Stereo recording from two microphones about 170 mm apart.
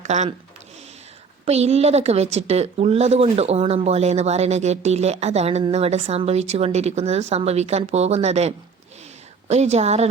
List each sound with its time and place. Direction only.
0.0 s speech: 40° right (ahead or behind)
1.5 s a woman's voice: 40° right (ahead or behind)